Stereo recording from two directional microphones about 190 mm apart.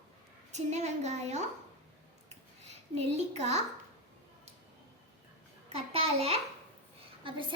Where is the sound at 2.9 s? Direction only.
35° right (ahead or behind).